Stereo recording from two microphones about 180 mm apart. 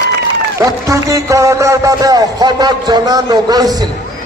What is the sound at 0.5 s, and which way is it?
A man's voice, 20° right (ahead or behind).